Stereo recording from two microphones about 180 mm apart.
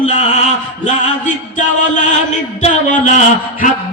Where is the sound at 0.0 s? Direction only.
40° left (ahead or behind).